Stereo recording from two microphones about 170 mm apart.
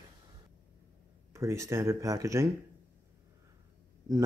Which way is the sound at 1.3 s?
15° right (ahead or behind).